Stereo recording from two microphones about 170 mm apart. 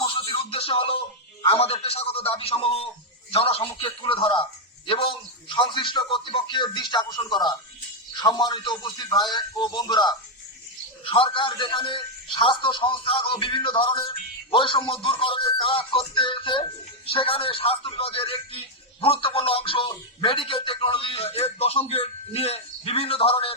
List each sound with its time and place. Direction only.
0.1 s music: 35° left (ahead or behind)
1.4 s a man's voice: 35° left (ahead or behind)